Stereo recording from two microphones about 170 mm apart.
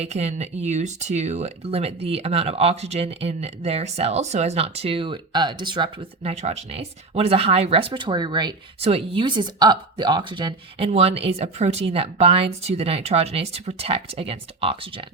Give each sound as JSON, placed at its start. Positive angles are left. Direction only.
{"t": 0.0, "sound": "speech", "side_deg": -40}